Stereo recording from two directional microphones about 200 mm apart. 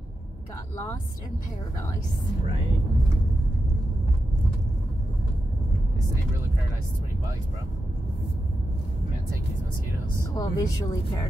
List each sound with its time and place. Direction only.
10.3 s a woman's voice: 20° left (ahead or behind)